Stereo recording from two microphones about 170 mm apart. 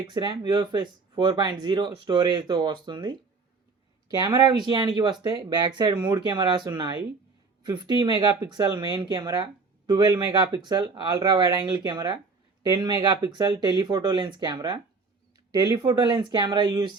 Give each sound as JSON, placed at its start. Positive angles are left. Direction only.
{"t": 0.0, "sound": "speech", "side_deg": -25}
{"t": 4.2, "sound": "speech", "side_deg": -20}